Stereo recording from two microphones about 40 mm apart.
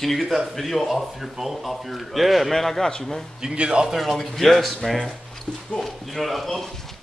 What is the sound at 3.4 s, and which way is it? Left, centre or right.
Speech, right.